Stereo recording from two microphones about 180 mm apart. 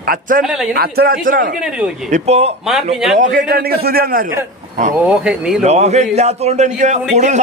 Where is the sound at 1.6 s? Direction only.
5° right (ahead or behind).